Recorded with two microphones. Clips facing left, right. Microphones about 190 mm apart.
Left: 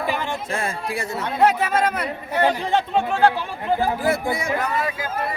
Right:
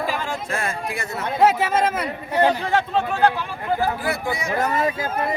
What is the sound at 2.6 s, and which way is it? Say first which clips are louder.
Speech: left 1 dB; 20° left (ahead or behind).